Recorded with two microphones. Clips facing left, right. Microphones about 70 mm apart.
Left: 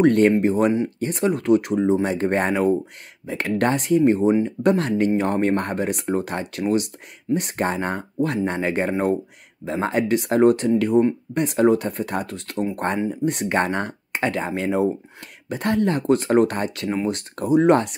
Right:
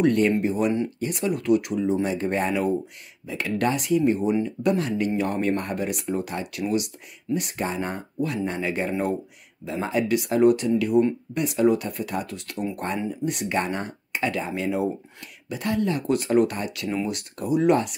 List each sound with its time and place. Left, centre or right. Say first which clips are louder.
0.0 s speech: left 4 dB; left